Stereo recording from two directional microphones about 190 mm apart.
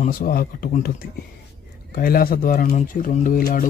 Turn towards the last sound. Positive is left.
turn(degrees=50)  # may be behind; listen again after turning